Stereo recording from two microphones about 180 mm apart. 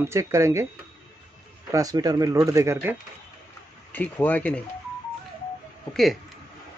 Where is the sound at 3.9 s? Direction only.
10° left (ahead or behind).